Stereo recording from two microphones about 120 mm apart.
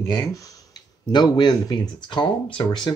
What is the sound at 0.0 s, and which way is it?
Speech, 30° left (ahead or behind).